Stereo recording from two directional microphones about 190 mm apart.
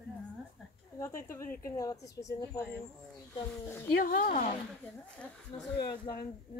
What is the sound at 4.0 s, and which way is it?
Speech, 50° left (ahead or behind).